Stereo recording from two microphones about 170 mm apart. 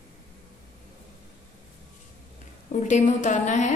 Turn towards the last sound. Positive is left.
turn(degrees=45)  # may be behind; listen again after turning